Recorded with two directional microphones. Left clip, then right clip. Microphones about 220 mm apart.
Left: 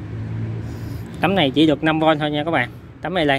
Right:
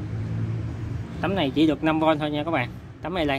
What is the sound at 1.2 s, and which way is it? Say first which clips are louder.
A man's voice: left 6 dB; 25° left (ahead or behind).